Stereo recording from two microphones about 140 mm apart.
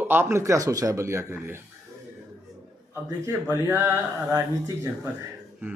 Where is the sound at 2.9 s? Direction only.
15° right (ahead or behind).